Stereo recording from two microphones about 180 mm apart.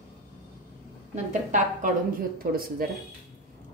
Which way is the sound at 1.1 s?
45° right (ahead or behind).